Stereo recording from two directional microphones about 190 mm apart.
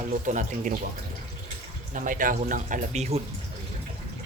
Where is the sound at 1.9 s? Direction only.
45° right (ahead or behind).